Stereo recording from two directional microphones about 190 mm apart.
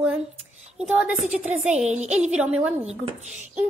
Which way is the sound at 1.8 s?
35° right (ahead or behind).